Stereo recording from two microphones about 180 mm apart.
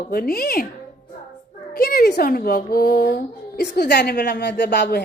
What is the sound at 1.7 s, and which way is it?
A woman's voice, 60° left (ahead or behind).